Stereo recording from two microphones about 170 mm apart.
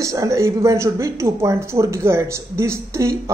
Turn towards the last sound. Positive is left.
turn(degrees=-15)  # may be behind; listen again after turning